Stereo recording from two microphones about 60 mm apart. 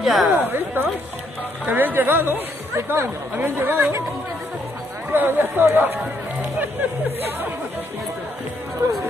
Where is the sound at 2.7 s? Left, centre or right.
Right.